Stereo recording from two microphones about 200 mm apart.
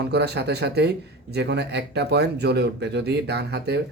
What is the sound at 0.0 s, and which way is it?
Speech, 55° right (ahead or behind).